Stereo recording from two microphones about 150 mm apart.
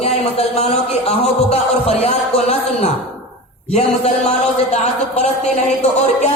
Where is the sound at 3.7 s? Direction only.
45° left (ahead or behind).